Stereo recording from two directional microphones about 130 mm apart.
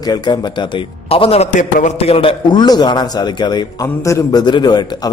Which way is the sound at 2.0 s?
45° left (ahead or behind).